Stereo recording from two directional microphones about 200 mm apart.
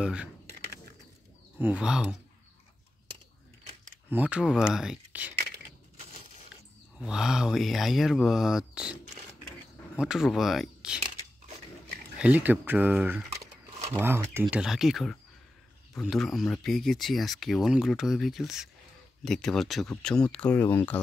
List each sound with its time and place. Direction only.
0.0 s speech: 5° right (ahead or behind)
1.6 s speech: 5° right (ahead or behind)
4.1 s speech: 5° right (ahead or behind)
7.0 s speech: 5° right (ahead or behind)
9.9 s speech: 5° right (ahead or behind)
12.2 s speech: 5° right (ahead or behind)
13.3 s a sound: 35° right (ahead or behind)
13.9 s speech: 10° right (ahead or behind); by 21.0 s 10° left (ahead or behind)